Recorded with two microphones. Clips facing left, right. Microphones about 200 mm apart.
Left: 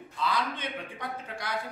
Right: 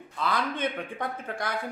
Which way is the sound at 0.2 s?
50° right (ahead or behind).